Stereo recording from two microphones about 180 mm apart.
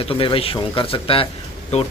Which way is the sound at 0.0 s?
30° left (ahead or behind).